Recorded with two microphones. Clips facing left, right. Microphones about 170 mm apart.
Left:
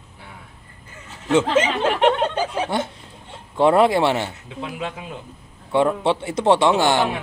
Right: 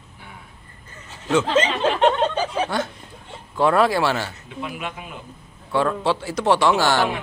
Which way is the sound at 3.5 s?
25° left (ahead or behind).